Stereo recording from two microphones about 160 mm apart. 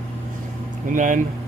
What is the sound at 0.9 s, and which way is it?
Speech, 50° right (ahead or behind).